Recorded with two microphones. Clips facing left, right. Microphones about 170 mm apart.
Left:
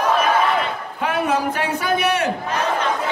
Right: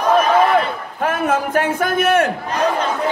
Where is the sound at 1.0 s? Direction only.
50° right (ahead or behind).